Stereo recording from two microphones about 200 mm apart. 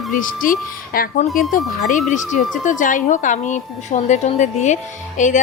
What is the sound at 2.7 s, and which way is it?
A woman's voice, 40° left (ahead or behind).